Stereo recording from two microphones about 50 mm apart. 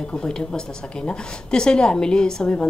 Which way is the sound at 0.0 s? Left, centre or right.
Centre.